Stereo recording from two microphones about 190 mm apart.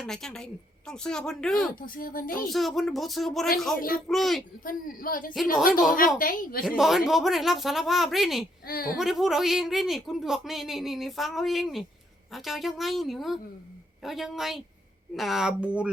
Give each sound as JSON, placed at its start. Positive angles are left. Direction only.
{"t": 0.0, "sound": "a man's voice", "side_deg": 5}
{"t": 1.7, "sound": "speech", "side_deg": 50}
{"t": 2.5, "sound": "a man's voice", "side_deg": 0}
{"t": 3.8, "sound": "speech", "side_deg": 50}
{"t": 4.1, "sound": "a man's voice", "side_deg": 0}
{"t": 4.6, "sound": "speech", "side_deg": 45}
{"t": 6.7, "sound": "a man's voice", "side_deg": 0}
{"t": 8.6, "sound": "speech", "side_deg": 50}
{"t": 9.0, "sound": "a man's voice", "side_deg": 0}